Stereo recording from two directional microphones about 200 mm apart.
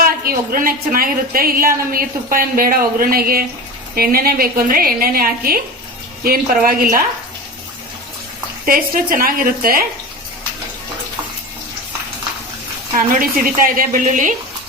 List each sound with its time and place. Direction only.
0.0 s a woman's voice: 45° right (ahead or behind)
8.6 s a woman's voice: 45° right (ahead or behind)
13.1 s a woman's voice: 45° right (ahead or behind)